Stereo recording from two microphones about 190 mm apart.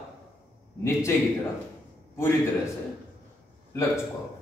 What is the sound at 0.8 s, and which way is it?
Speech, 15° left (ahead or behind).